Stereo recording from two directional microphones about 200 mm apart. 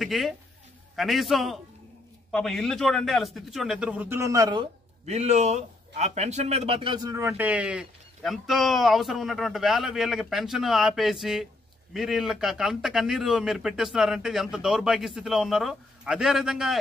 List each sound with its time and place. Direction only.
0.0 s speech: centre (ahead or behind); by 4.6 s 20° right (ahead or behind)
5.0 s speech: 35° right (ahead or behind); by 16.7 s centre (ahead or behind)